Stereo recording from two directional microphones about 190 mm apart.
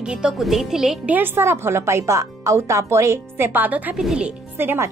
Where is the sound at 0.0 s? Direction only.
5° right (ahead or behind).